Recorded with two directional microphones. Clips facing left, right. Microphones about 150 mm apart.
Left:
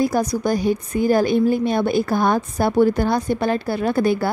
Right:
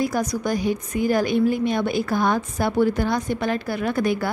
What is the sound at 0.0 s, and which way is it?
A woman's voice, 35° left (ahead or behind).